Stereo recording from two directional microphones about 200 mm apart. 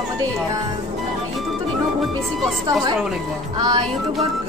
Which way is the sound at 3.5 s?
20° right (ahead or behind).